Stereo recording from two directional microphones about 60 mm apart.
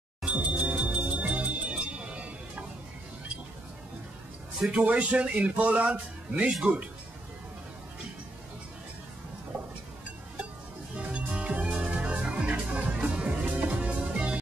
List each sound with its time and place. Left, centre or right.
0.2 s music: centre
4.6 s speech: centre
11.0 s organ: centre